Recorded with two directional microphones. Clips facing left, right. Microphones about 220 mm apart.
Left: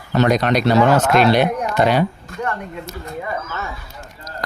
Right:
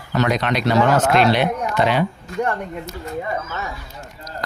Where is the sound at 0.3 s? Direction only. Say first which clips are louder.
Left 5 dB; 40° left (ahead or behind).